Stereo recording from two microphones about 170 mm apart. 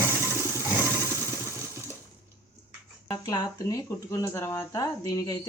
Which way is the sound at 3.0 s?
20° left (ahead or behind).